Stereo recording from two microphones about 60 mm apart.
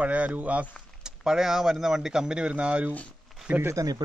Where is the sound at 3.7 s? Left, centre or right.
Right.